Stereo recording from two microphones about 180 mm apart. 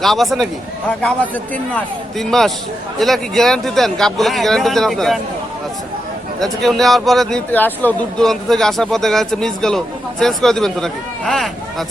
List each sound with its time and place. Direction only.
0.0 s a man's voice: centre (ahead or behind)
6.4 s speech: centre (ahead or behind)